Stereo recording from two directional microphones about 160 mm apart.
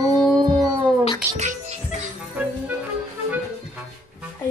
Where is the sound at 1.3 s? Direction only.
45° right (ahead or behind).